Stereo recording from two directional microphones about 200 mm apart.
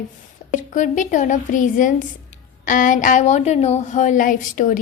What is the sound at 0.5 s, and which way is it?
A woman's voice, 40° left (ahead or behind).